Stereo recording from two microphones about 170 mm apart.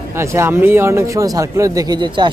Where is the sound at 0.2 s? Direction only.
15° right (ahead or behind).